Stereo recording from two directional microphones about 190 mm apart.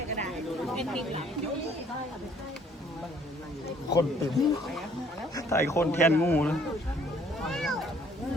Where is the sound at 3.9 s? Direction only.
15° left (ahead or behind).